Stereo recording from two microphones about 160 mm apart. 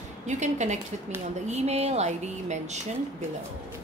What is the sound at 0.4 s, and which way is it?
A woman's voice, 45° right (ahead or behind).